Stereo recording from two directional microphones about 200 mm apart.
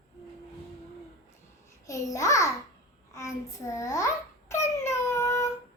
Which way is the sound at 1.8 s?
15° left (ahead or behind).